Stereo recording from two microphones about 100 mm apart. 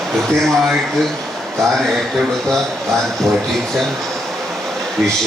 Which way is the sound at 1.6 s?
5° left (ahead or behind).